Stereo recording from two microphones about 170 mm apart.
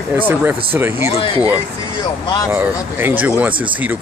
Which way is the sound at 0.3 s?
10° right (ahead or behind).